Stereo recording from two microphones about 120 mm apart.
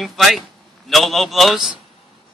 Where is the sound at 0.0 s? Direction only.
Centre (ahead or behind).